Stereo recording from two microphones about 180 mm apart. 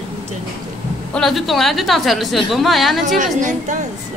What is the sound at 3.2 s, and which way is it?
Speech, 45° right (ahead or behind).